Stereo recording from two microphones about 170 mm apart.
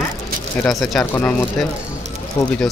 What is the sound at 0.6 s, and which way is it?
Speech, centre (ahead or behind).